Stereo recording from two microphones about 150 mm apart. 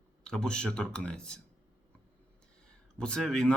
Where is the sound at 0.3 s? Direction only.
5° left (ahead or behind).